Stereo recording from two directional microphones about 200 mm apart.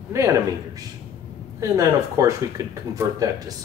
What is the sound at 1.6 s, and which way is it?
Speech, 15° right (ahead or behind).